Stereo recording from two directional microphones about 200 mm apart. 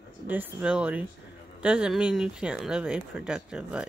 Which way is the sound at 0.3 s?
5° right (ahead or behind).